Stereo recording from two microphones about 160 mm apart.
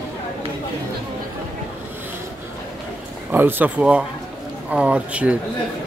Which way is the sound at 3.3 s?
10° right (ahead or behind).